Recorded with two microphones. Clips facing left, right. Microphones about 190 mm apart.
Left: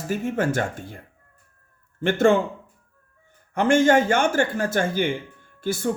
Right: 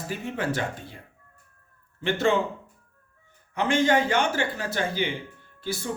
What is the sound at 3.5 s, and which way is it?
Speech, 50° left (ahead or behind).